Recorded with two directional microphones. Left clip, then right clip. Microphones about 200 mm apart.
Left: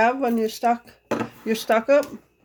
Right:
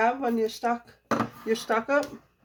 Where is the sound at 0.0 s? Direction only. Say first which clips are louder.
Left 4 dB; 50° left (ahead or behind).